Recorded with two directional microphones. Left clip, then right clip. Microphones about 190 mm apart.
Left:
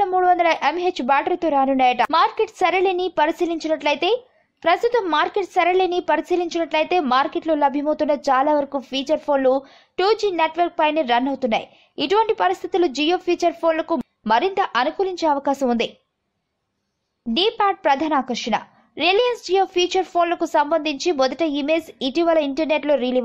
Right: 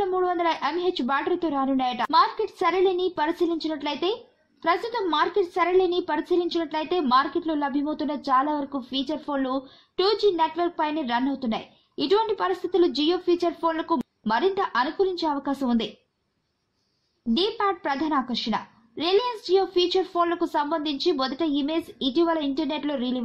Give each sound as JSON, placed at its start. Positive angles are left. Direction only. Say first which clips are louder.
{"t": 0.0, "sound": "a woman's voice", "louder": "left 7 dB", "side_deg": 15}
{"t": 17.3, "sound": "a woman's voice", "louder": "left 5 dB", "side_deg": 15}